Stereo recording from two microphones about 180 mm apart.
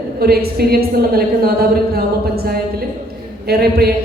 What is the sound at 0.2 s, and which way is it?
A woman's voice, 60° right (ahead or behind).